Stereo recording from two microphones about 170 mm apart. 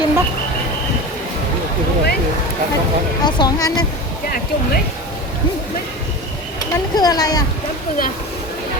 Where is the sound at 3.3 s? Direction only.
25° left (ahead or behind).